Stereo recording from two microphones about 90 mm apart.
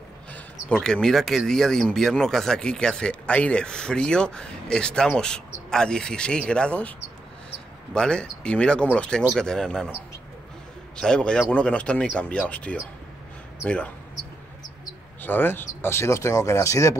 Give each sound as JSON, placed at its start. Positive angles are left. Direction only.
{"t": 0.7, "sound": "speech", "side_deg": 5}
{"t": 7.9, "sound": "speech", "side_deg": 10}
{"t": 11.0, "sound": "speech", "side_deg": 10}
{"t": 15.2, "sound": "speech", "side_deg": 20}